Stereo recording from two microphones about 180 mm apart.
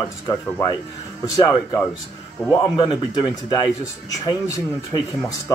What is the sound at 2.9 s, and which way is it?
Speech, 25° left (ahead or behind).